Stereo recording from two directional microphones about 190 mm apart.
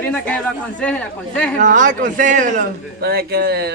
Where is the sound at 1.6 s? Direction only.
40° right (ahead or behind).